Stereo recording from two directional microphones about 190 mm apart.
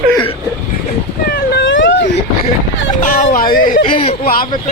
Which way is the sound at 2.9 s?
45° left (ahead or behind).